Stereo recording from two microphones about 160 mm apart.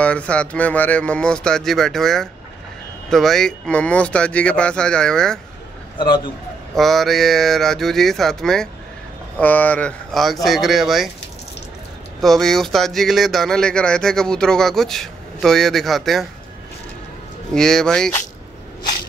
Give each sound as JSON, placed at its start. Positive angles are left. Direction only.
{"t": 0.0, "sound": "speech", "side_deg": 5}
{"t": 6.7, "sound": "speech", "side_deg": 0}
{"t": 12.2, "sound": "speech", "side_deg": 0}
{"t": 17.6, "sound": "speech", "side_deg": 5}